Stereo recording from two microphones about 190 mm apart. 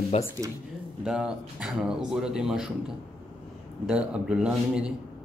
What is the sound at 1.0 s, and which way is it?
Speech, 5° right (ahead or behind).